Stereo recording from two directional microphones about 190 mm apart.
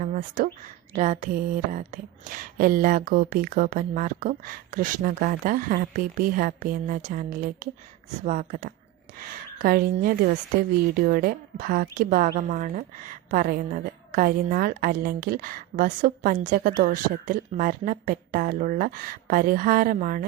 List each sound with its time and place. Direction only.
0.0 s a woman's voice: 45° right (ahead or behind)